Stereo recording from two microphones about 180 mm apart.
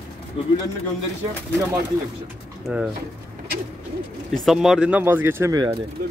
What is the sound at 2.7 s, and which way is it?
Speech, 5° right (ahead or behind).